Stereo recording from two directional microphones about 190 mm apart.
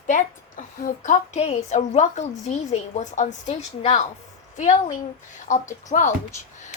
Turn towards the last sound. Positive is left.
turn(degrees=40)  # may be behind; listen again after turning